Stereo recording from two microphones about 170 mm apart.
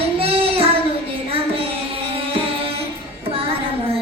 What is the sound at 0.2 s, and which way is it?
Child singing, 35° right (ahead or behind).